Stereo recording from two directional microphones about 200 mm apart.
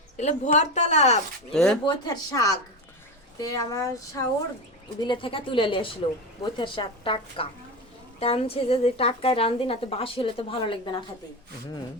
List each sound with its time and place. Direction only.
0.2 s a woman's voice: 35° left (ahead or behind)
1.5 s speech: centre (ahead or behind)
1.8 s a woman's voice: 20° left (ahead or behind)
3.4 s a sound: 15° left (ahead or behind)
4.9 s a woman's voice: 25° left (ahead or behind)